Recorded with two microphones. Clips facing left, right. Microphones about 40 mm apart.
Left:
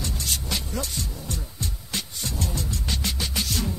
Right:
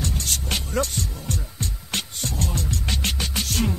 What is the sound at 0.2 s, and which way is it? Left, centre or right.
Music, right.